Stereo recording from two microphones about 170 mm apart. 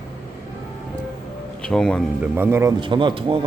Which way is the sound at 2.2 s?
10° right (ahead or behind).